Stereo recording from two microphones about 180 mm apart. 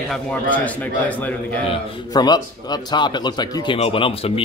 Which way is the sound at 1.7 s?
20° left (ahead or behind).